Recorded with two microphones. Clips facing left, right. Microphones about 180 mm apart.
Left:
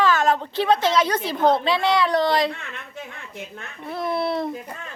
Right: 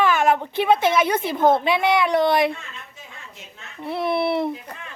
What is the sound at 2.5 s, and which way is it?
A woman's voice, 65° left (ahead or behind).